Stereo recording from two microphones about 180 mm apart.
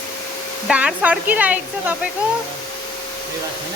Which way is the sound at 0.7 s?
5° right (ahead or behind).